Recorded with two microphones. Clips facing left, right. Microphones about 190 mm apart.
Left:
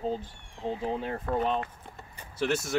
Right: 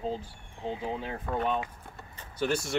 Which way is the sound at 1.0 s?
Centre (ahead or behind).